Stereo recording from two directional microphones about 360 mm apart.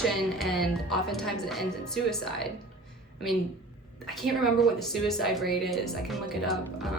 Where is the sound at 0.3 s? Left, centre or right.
Centre.